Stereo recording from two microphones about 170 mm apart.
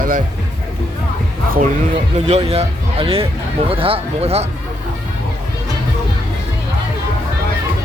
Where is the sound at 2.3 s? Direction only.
40° right (ahead or behind).